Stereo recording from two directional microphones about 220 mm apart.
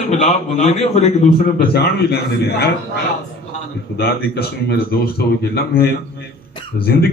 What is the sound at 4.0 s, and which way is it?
Speech, 45° left (ahead or behind).